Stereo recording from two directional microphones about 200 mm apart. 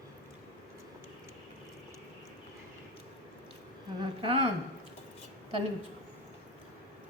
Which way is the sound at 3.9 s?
25° right (ahead or behind).